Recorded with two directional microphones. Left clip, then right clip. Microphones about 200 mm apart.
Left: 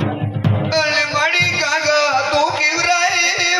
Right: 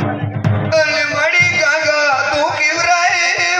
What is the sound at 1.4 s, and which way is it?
Music, 25° right (ahead or behind).